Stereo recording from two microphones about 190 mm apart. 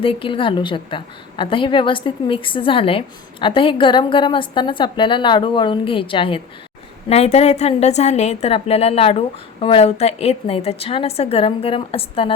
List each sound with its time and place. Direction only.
0.0 s a woman's voice: 30° left (ahead or behind)